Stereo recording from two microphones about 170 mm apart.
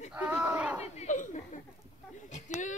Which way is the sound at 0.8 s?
45° left (ahead or behind).